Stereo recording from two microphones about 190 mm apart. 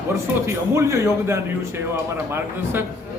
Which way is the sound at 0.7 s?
15° right (ahead or behind).